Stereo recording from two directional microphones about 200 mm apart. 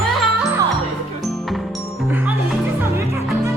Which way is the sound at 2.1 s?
10° right (ahead or behind).